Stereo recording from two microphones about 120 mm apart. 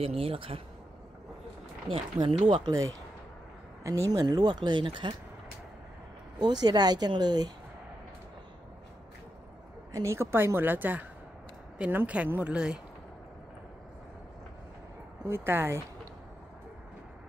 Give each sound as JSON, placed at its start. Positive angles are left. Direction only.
{"t": 0.0, "sound": "speech", "side_deg": -55}
{"t": 1.9, "sound": "speech", "side_deg": -45}
{"t": 2.7, "sound": "speech", "side_deg": -30}
{"t": 4.1, "sound": "speech", "side_deg": -35}
{"t": 6.4, "sound": "speech", "side_deg": -35}
{"t": 9.9, "sound": "a woman's voice", "side_deg": -25}
{"t": 15.2, "sound": "a woman's voice", "side_deg": -20}